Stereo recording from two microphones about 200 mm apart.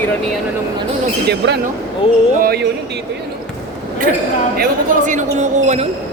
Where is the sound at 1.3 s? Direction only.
55° right (ahead or behind).